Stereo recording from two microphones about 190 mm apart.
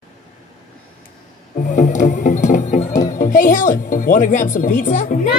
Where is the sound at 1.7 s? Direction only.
40° left (ahead or behind).